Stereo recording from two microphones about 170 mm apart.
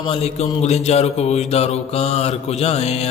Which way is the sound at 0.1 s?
35° left (ahead or behind).